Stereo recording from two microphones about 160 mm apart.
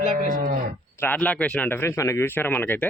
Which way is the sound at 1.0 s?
10° left (ahead or behind).